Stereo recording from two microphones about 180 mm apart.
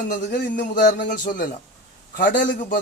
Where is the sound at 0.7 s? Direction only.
45° left (ahead or behind).